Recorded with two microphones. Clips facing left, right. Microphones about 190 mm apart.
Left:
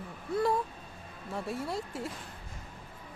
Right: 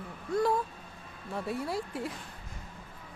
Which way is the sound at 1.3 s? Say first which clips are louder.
Right 1 dB; centre (ahead or behind).